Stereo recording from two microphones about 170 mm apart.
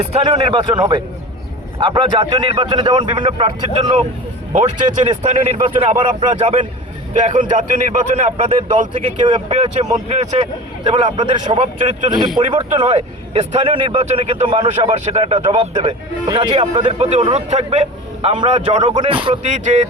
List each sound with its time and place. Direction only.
0.0 s a man's voice: 35° right (ahead or behind)
5.0 s a man's voice: 40° right (ahead or behind)
10.8 s speech: 30° right (ahead or behind)
12.4 s speech: 30° right (ahead or behind)
16.2 s speech: 30° right (ahead or behind)
18.8 s speech: 25° right (ahead or behind); by 19.9 s 45° right (ahead or behind)